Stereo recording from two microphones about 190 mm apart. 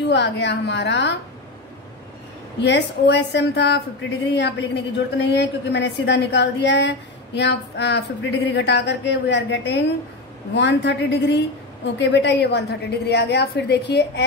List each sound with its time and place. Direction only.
0.0 s a woman's voice: 65° left (ahead or behind)
2.6 s a woman's voice: 65° left (ahead or behind)